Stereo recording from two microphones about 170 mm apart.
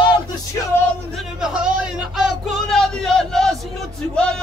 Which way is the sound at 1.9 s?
Centre (ahead or behind).